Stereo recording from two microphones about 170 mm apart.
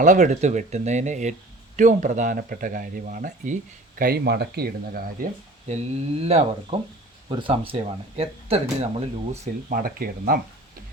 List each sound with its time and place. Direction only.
0.0 s speech: 45° right (ahead or behind)
5.6 s speech: 40° right (ahead or behind)
9.4 s speech: 55° right (ahead or behind)